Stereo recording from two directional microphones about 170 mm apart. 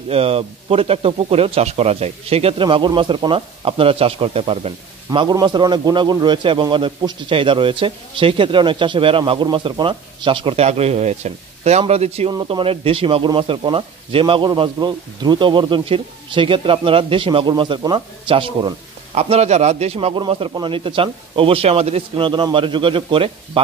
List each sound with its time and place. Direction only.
0.1 s speech: 35° right (ahead or behind)